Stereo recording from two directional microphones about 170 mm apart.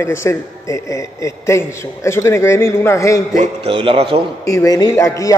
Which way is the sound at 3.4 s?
30° right (ahead or behind).